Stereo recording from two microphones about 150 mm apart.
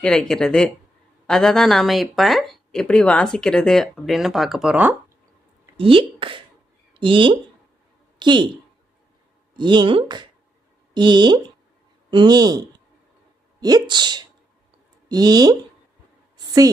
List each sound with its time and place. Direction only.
0.0 s speech: 5° left (ahead or behind); by 5.1 s 10° right (ahead or behind)
5.7 s speech: 35° right (ahead or behind)
9.6 s speech: 30° right (ahead or behind)
13.6 s speech: 25° right (ahead or behind)